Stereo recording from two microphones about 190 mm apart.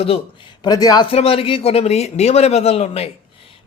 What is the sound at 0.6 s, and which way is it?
Speech, 20° left (ahead or behind).